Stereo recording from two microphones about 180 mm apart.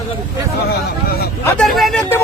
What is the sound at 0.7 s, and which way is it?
Speech, 60° left (ahead or behind).